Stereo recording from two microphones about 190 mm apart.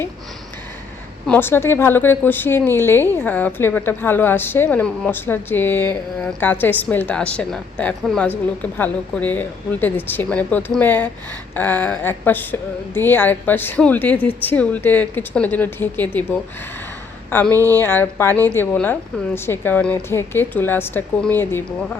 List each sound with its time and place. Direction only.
1.3 s a woman's voice: 10° left (ahead or behind)
17.5 s speech: 15° right (ahead or behind)
17.7 s a woman's voice: 10° left (ahead or behind)